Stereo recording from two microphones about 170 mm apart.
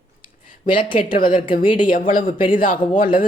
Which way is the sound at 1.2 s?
55° left (ahead or behind).